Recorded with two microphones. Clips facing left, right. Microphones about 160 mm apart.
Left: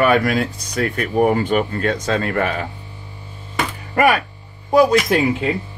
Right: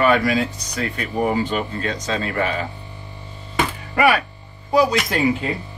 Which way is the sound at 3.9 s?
45° left (ahead or behind).